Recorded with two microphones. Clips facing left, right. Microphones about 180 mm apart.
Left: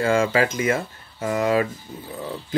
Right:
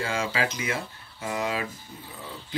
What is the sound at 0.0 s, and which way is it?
Speech, 50° left (ahead or behind).